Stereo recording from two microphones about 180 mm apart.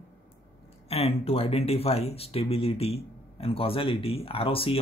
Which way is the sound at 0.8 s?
35° left (ahead or behind).